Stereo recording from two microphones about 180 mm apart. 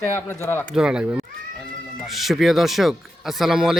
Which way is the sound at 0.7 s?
5° right (ahead or behind).